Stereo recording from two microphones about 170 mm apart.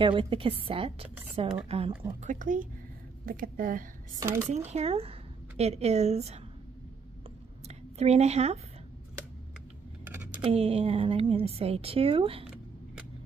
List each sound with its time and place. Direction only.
0.0 s speech: 30° right (ahead or behind)
2.2 s speech: 50° right (ahead or behind)
4.2 s speech: 15° right (ahead or behind)
4.6 s speech: 35° right (ahead or behind)
7.6 s a sound: 40° right (ahead or behind)
10.0 s a sound: 10° right (ahead or behind)
10.4 s speech: 35° right (ahead or behind)